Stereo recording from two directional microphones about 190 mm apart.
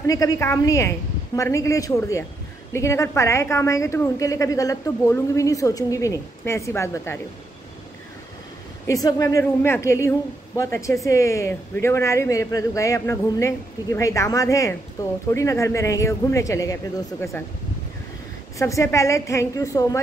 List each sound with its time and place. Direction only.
0.0 s a woman's voice: 20° left (ahead or behind)
8.8 s a woman's voice: 20° left (ahead or behind)
18.6 s a woman's voice: 15° left (ahead or behind)